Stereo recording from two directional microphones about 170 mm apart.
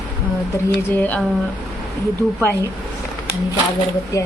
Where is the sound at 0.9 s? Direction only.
10° left (ahead or behind).